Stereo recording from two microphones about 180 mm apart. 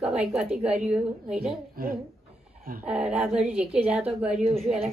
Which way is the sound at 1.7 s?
55° right (ahead or behind).